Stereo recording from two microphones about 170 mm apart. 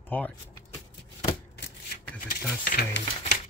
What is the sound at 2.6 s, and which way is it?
Speech, 65° left (ahead or behind).